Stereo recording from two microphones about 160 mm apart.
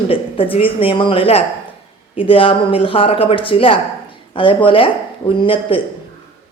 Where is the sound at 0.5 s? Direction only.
35° left (ahead or behind).